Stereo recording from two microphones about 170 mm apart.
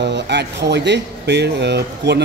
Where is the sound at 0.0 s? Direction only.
90° right.